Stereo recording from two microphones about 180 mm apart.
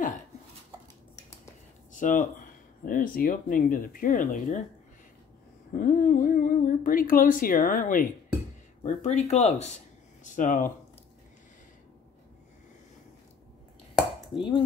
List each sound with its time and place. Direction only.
1.9 s speech: 45° left (ahead or behind)
5.7 s speech: 45° left (ahead or behind)
14.3 s dishes: 30° left (ahead or behind)